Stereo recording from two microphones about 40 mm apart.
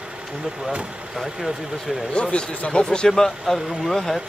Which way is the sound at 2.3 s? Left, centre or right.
Left.